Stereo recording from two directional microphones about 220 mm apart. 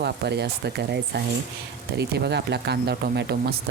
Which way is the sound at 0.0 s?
50° right (ahead or behind).